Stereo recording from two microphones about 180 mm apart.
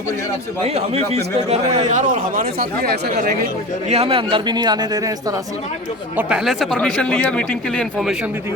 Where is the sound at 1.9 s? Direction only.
45° right (ahead or behind).